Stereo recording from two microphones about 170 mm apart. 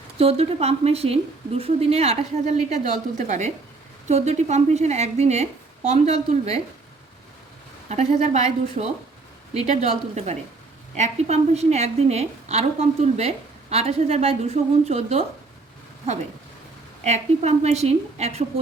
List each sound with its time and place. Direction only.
0.2 s a woman's voice: 35° right (ahead or behind)
7.9 s a woman's voice: 40° right (ahead or behind)
17.0 s a woman's voice: 40° right (ahead or behind)